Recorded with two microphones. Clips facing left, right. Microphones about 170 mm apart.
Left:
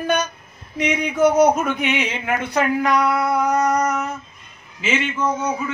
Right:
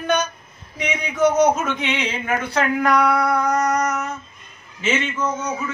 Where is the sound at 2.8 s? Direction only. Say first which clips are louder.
Right 1 dB; centre (ahead or behind).